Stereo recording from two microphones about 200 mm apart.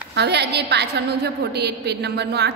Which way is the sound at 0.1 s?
55° right (ahead or behind).